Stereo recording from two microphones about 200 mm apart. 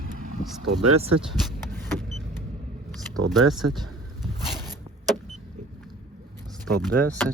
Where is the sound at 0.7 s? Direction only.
90° right.